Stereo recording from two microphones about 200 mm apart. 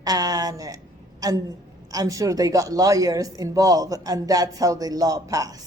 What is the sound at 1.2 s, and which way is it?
A woman's voice, 20° right (ahead or behind).